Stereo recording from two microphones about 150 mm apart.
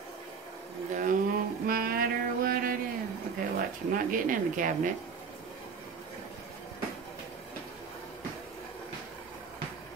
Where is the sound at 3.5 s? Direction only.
65° right (ahead or behind).